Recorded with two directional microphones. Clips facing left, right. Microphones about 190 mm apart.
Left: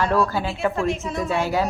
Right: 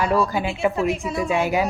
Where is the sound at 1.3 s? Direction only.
15° right (ahead or behind).